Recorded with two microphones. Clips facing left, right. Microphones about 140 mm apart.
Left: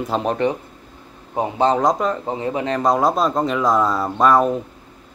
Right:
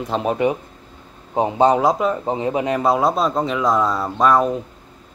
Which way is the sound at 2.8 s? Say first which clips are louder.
Left 2 dB; 5° right (ahead or behind).